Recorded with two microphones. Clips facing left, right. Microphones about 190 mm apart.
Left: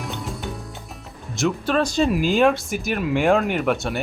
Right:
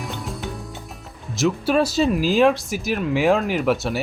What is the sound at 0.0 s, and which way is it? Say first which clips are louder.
Music: even; centre (ahead or behind).